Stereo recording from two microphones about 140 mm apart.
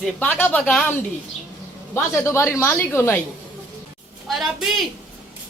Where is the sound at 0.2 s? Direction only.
15° left (ahead or behind).